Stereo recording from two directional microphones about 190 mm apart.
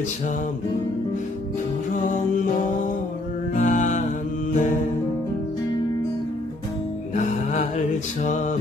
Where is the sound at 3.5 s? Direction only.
40° left (ahead or behind).